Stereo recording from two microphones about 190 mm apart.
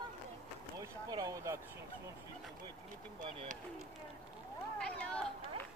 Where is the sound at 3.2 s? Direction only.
40° right (ahead or behind).